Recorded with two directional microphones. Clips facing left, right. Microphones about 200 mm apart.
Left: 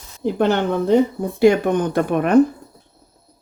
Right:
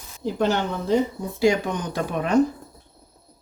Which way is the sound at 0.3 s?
60° left (ahead or behind).